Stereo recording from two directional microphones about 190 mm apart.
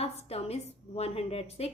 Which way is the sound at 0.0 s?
35° left (ahead or behind).